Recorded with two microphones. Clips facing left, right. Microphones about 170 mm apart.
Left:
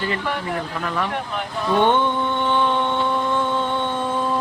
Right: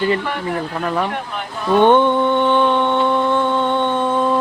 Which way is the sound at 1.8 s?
55° right (ahead or behind).